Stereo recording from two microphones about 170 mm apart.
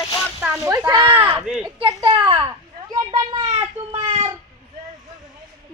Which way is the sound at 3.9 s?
35° right (ahead or behind).